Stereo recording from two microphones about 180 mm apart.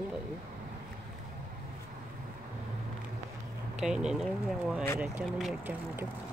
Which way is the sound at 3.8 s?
5° right (ahead or behind).